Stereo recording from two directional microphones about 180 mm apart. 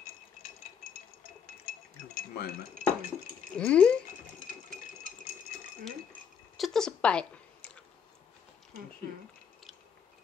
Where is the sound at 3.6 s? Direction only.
5° left (ahead or behind).